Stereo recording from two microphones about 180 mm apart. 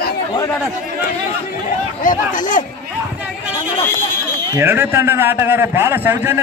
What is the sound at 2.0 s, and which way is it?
Speech, 45° left (ahead or behind).